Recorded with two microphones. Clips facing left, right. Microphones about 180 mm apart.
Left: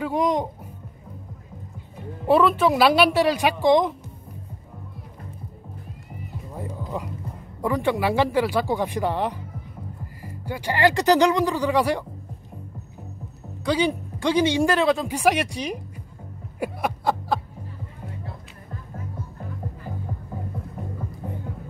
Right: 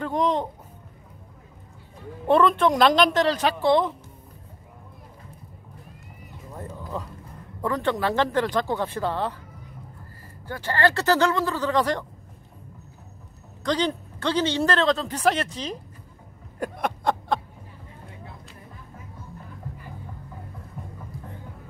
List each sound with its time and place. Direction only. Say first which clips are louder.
0.0 s music: left 1 dB; 10° left (ahead or behind)
2.2 s speech: left 1 dB; 5° left (ahead or behind)
6.5 s music: left 2 dB; 10° left (ahead or behind)
7.6 s speech: left 2 dB; 10° left (ahead or behind)
13.7 s speech: left 2 dB; 10° left (ahead or behind)
16.5 s chuckle: left 1 dB; 5° left (ahead or behind)